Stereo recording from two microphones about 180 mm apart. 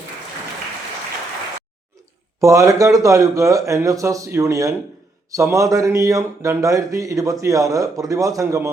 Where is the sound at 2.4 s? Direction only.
15° right (ahead or behind).